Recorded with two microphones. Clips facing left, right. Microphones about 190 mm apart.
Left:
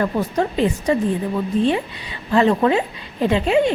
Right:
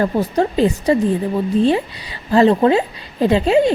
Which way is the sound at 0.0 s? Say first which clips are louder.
Right 3 dB; 35° right (ahead or behind).